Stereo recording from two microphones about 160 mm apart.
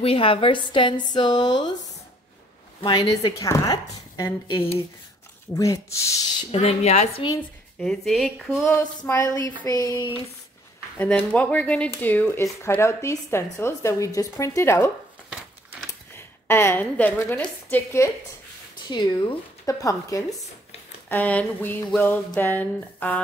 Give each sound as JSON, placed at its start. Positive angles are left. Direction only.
{"t": 0.0, "sound": "a woman's voice", "side_deg": 35}
{"t": 2.8, "sound": "speech", "side_deg": 25}
{"t": 6.5, "sound": "a woman's voice", "side_deg": 40}
{"t": 7.8, "sound": "speech", "side_deg": 0}
{"t": 8.6, "sound": "a woman's voice", "side_deg": 15}
{"t": 11.0, "sound": "a woman's voice", "side_deg": 10}
{"t": 16.4, "sound": "a woman's voice", "side_deg": 15}
{"t": 18.9, "sound": "speech", "side_deg": 25}
{"t": 21.1, "sound": "a woman's voice", "side_deg": 10}